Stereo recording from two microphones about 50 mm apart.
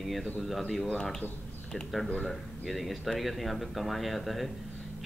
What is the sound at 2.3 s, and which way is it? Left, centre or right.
Speech, centre.